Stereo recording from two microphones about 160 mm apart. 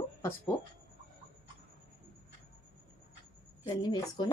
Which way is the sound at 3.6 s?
25° left (ahead or behind).